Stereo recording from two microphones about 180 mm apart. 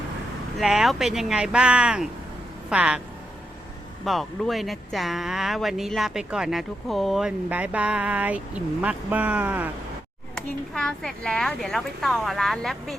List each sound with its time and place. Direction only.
0.6 s speech: centre (ahead or behind)
4.0 s speech: centre (ahead or behind)
10.3 s speech: 5° left (ahead or behind)